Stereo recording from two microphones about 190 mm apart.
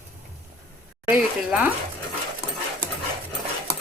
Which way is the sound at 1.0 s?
5° right (ahead or behind).